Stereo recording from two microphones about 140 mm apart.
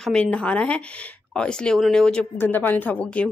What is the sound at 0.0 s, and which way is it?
Speech, 5° left (ahead or behind).